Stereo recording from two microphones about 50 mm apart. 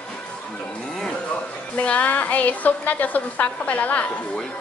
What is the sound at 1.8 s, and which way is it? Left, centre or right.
A woman's voice, left.